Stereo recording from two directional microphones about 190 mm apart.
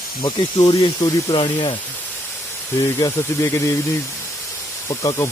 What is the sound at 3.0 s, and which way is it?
Speech, 15° left (ahead or behind).